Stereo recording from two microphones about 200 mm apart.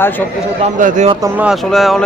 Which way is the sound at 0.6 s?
40° right (ahead or behind).